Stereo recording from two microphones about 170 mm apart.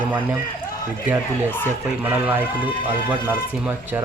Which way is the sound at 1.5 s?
10° left (ahead or behind).